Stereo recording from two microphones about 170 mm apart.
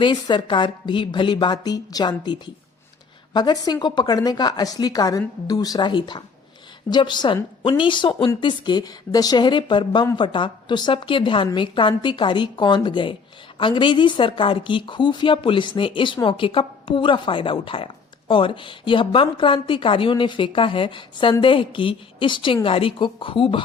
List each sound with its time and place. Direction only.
0.0 s a woman's voice: 25° left (ahead or behind)